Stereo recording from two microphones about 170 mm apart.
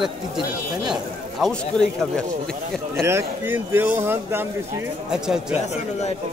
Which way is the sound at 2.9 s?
15° right (ahead or behind).